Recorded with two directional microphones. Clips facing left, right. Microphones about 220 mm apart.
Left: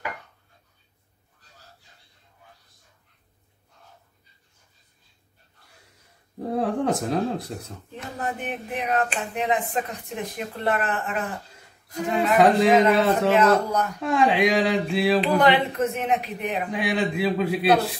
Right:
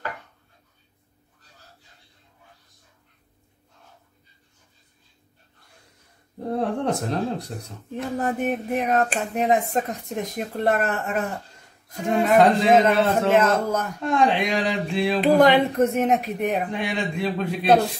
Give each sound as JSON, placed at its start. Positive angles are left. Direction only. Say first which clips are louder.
{"t": 6.5, "sound": "speech", "louder": "even", "side_deg": 0}
{"t": 7.9, "sound": "speech", "louder": "right 6 dB", "side_deg": -45}
{"t": 12.2, "sound": "speech", "louder": "right 1 dB", "side_deg": 0}
{"t": 13.3, "sound": "speech", "louder": "even", "side_deg": -45}
{"t": 14.0, "sound": "speech", "louder": "left 1 dB", "side_deg": 0}
{"t": 15.2, "sound": "speech", "louder": "right 4 dB", "side_deg": -40}
{"t": 16.7, "sound": "speech", "louder": "left 2 dB", "side_deg": 5}